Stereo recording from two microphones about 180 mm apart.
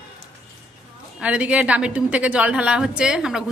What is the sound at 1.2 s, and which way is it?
A woman's voice, 5° right (ahead or behind).